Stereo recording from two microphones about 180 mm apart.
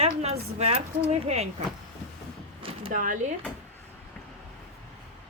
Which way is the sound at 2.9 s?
45° right (ahead or behind).